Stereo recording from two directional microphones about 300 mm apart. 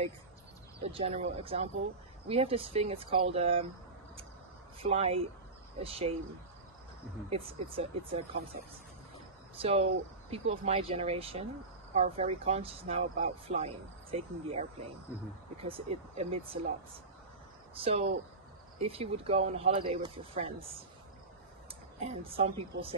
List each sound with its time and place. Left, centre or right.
0.8 s speech: centre
4.8 s speech: centre
7.2 s speech: centre
9.6 s speech: centre
17.7 s speech: centre
22.0 s speech: centre